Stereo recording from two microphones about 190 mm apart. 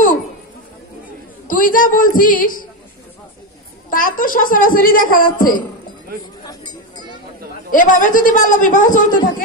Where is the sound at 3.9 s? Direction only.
45° left (ahead or behind).